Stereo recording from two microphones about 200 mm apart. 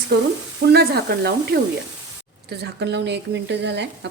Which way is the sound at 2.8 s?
60° right (ahead or behind).